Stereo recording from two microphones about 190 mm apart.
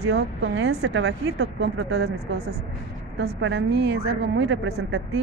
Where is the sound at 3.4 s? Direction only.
70° right (ahead or behind).